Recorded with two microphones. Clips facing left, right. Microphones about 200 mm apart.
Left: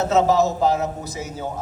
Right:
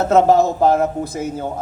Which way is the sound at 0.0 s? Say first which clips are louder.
Right 4 dB; 55° right (ahead or behind).